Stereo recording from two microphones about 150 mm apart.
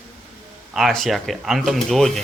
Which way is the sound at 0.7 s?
Centre (ahead or behind).